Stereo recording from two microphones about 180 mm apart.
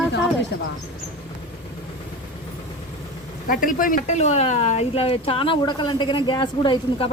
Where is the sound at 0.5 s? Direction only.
65° left (ahead or behind).